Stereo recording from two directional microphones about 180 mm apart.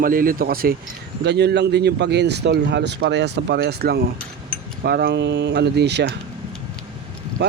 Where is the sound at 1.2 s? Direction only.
65° right (ahead or behind).